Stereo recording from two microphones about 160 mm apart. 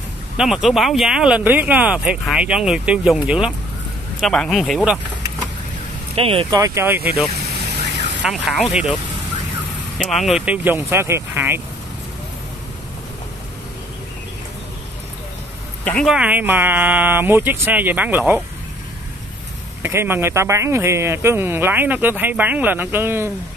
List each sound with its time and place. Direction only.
0.4 s speech: 5° right (ahead or behind)
6.1 s speech: 35° right (ahead or behind)
6.5 s speech: 20° right (ahead or behind)
7.3 s vehicle: 90° right
8.2 s speech: centre (ahead or behind)
9.9 s speech: centre (ahead or behind)
15.8 s speech: 5° left (ahead or behind)
16.1 s speech: 10° right (ahead or behind)
19.8 s speech: 15° right (ahead or behind)